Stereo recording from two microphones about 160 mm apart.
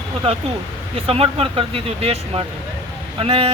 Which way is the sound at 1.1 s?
35° right (ahead or behind).